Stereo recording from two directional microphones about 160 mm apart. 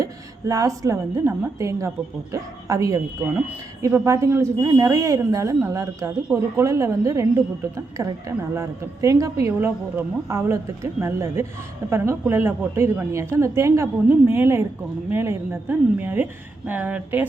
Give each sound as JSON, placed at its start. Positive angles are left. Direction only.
{"t": 0.0, "sound": "a woman's voice", "side_deg": -20}